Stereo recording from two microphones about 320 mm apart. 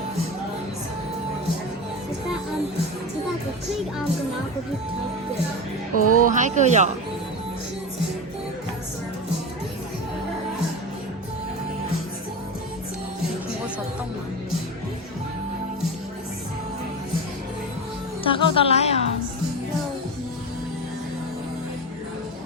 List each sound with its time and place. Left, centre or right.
5.9 s music: left
6.2 s speech: right
18.2 s a woman's voice: centre